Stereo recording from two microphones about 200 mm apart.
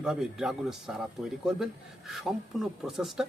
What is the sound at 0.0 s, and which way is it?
Speech, 5° right (ahead or behind).